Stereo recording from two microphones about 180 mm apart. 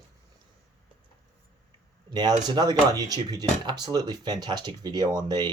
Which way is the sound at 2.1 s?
25° right (ahead or behind).